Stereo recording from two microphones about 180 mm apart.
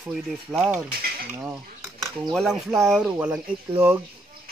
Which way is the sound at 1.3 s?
10° right (ahead or behind).